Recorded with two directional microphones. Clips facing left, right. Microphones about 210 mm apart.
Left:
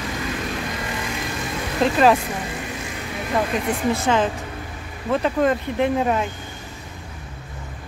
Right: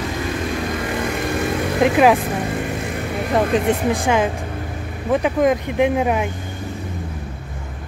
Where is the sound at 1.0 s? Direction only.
60° right (ahead or behind).